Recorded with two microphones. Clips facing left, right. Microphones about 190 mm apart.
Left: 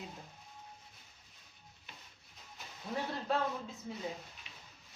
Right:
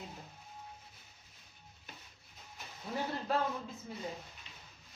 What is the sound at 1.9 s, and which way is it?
Music, 45° right (ahead or behind).